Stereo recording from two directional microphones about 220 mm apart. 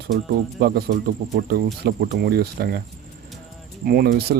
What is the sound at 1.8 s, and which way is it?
Speech, 45° right (ahead or behind).